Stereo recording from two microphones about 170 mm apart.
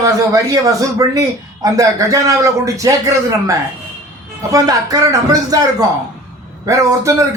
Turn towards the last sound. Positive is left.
turn(degrees=-20)  # may be behind; listen again after turning